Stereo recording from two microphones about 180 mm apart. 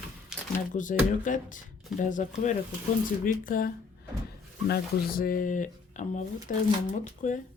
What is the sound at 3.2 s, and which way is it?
Speech, 50° left (ahead or behind).